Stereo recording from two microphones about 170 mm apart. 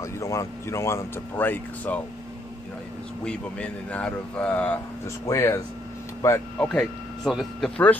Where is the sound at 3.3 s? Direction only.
5° left (ahead or behind).